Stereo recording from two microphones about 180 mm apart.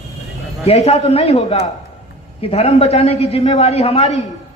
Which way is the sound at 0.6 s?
35° left (ahead or behind).